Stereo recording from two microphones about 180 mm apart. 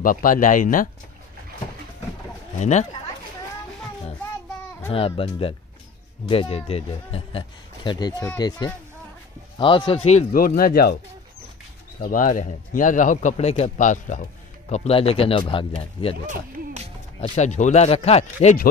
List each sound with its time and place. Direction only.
0.0 s a man's voice: 50° left (ahead or behind)
2.6 s a man's voice: 40° left (ahead or behind)
4.9 s a man's voice: 30° left (ahead or behind)
10.3 s speech: 55° left (ahead or behind)
12.0 s a man's voice: 50° left (ahead or behind); by 16.2 s 30° left (ahead or behind)
17.4 s a man's voice: 40° left (ahead or behind)